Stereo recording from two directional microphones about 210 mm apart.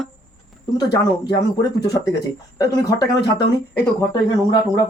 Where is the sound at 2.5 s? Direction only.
15° left (ahead or behind).